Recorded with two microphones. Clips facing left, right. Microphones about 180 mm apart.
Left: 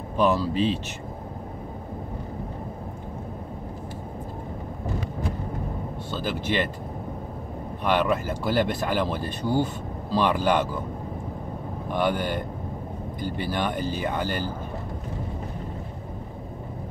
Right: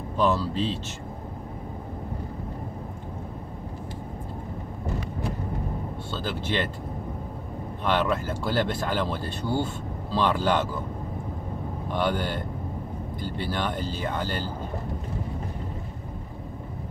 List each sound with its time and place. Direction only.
0.2 s speech: 15° left (ahead or behind)
6.1 s speech: 10° left (ahead or behind)
7.8 s speech: 15° left (ahead or behind)
11.9 s speech: 15° left (ahead or behind)